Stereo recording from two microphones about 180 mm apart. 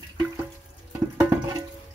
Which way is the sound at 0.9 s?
15° right (ahead or behind).